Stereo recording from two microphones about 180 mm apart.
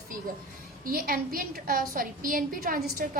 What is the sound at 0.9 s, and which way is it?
A woman's voice, 50° right (ahead or behind).